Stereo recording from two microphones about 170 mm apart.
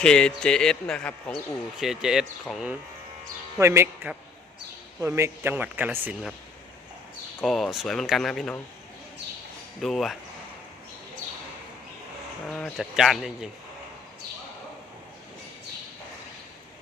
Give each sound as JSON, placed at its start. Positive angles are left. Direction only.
{"t": 0.0, "sound": "speech", "side_deg": 5}
{"t": 3.6, "sound": "a man's voice", "side_deg": -15}
{"t": 7.4, "sound": "speech", "side_deg": 0}
{"t": 9.8, "sound": "speech", "side_deg": 0}
{"t": 12.5, "sound": "speech", "side_deg": 5}